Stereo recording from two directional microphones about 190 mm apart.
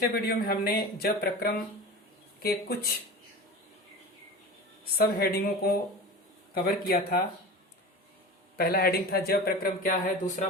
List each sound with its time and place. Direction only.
0.1 s speech: 55° left (ahead or behind)
4.9 s speech: 55° left (ahead or behind)
8.5 s speech: 55° left (ahead or behind)